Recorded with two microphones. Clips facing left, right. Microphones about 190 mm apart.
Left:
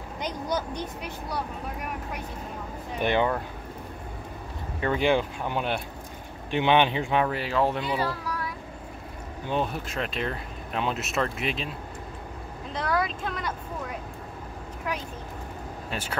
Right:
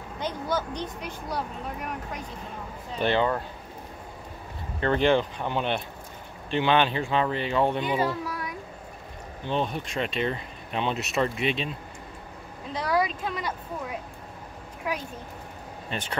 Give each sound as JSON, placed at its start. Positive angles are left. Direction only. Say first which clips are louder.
{"t": 0.2, "sound": "a sound", "louder": "right 1 dB", "side_deg": 15}
{"t": 3.0, "sound": "speech", "louder": "even", "side_deg": 15}
{"t": 4.7, "sound": "speech", "louder": "right 2 dB", "side_deg": 10}
{"t": 7.2, "sound": "speech", "louder": "right 1 dB", "side_deg": 5}
{"t": 7.8, "sound": "a sound", "louder": "right 2 dB", "side_deg": -20}
{"t": 9.5, "sound": "speech", "louder": "even", "side_deg": 5}
{"t": 12.7, "sound": "speech", "louder": "right 2 dB", "side_deg": 0}
{"t": 15.9, "sound": "speech", "louder": "right 1 dB", "side_deg": 5}